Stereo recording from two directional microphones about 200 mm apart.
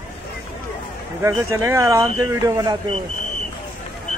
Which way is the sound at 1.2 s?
15° right (ahead or behind).